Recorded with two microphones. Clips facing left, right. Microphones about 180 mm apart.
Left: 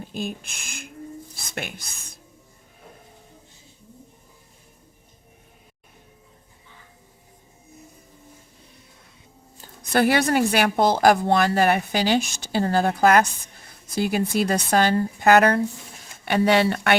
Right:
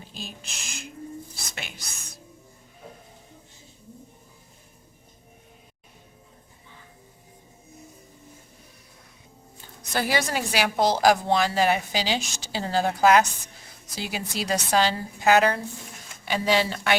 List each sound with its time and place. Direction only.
0.0 s speech: 55° left (ahead or behind)
9.9 s a woman's voice: 60° left (ahead or behind)